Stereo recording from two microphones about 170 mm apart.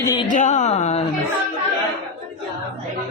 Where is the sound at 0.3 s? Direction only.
50° left (ahead or behind).